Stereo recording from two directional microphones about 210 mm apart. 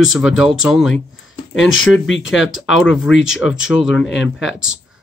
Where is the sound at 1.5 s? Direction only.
70° left (ahead or behind).